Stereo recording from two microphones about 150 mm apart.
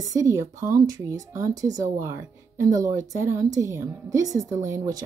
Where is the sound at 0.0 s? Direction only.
20° right (ahead or behind).